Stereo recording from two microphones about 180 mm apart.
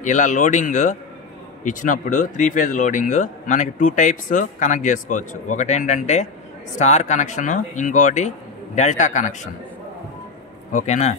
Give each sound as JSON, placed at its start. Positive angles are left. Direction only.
{"t": 0.0, "sound": "a man's voice", "side_deg": 45}
{"t": 10.7, "sound": "a man's voice", "side_deg": 40}